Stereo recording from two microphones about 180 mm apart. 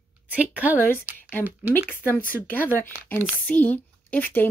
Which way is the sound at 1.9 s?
10° left (ahead or behind).